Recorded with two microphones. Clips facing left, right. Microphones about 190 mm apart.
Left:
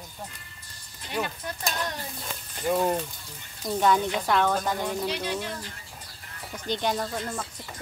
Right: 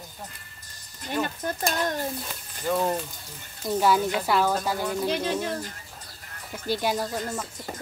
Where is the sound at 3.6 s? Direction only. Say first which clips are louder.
Right 1 dB; 5° right (ahead or behind).